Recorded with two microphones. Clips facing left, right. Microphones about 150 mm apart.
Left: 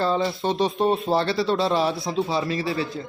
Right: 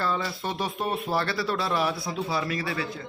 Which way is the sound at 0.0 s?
25° left (ahead or behind).